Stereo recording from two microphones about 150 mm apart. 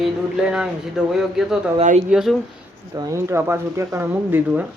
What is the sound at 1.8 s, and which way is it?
Speech, 50° right (ahead or behind).